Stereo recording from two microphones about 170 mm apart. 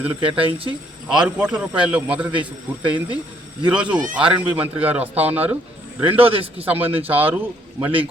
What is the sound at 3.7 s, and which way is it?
A man's voice, 5° right (ahead or behind).